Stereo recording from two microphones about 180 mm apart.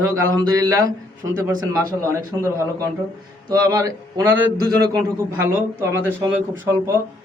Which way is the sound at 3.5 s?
20° right (ahead or behind).